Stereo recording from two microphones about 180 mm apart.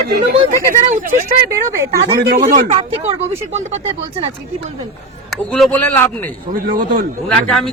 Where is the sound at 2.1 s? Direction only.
60° right (ahead or behind).